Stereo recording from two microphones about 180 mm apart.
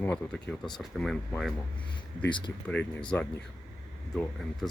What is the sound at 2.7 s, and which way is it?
Speech, 5° left (ahead or behind).